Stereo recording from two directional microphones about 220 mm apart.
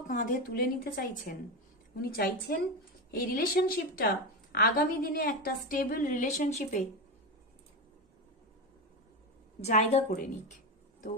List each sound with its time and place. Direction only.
0.1 s a woman's voice: 35° left (ahead or behind)
9.6 s a woman's voice: 30° left (ahead or behind)